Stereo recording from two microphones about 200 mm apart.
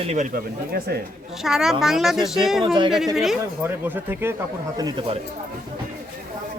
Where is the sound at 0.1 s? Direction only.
35° right (ahead or behind).